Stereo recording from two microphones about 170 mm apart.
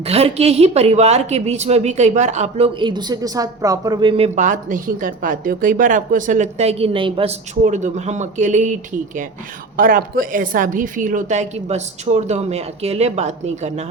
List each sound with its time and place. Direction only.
0.0 s speech: 35° right (ahead or behind)
7.5 s a woman's voice: 45° right (ahead or behind)
9.7 s a woman's voice: 55° right (ahead or behind)